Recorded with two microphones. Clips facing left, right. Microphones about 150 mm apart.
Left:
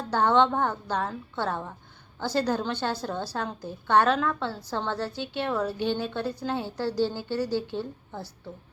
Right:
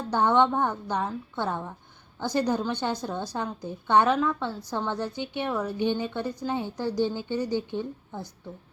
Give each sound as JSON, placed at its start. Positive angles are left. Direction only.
{"t": 0.1, "sound": "a woman's voice", "side_deg": -15}